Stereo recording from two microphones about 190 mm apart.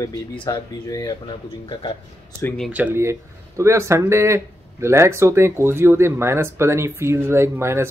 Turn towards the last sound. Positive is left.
turn(degrees=-15)  # may be behind; listen again after turning